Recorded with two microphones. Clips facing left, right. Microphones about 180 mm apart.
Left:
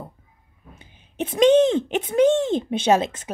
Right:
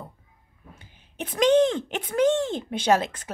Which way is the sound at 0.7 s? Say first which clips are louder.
Left 7 dB; 20° left (ahead or behind).